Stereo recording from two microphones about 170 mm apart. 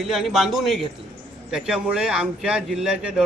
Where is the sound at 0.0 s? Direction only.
Centre (ahead or behind).